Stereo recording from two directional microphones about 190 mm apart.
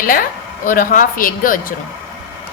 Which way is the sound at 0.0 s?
45° left (ahead or behind).